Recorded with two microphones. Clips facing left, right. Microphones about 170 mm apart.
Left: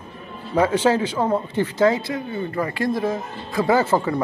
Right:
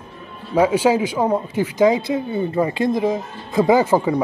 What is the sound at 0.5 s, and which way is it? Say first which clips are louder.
Speech: right 2 dB; 10° right (ahead or behind).